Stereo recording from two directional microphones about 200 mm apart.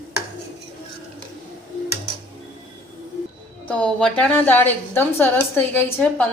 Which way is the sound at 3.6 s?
5° left (ahead or behind).